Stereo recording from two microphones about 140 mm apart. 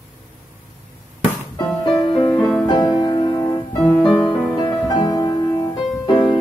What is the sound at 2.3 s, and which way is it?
Music, 10° left (ahead or behind).